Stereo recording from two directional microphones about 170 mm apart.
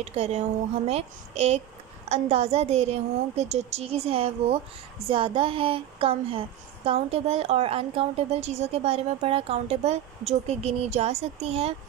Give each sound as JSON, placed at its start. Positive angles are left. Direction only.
{"t": 0.0, "sound": "speech", "side_deg": -40}